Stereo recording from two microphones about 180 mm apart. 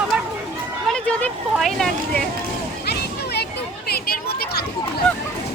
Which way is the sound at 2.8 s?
65° left (ahead or behind).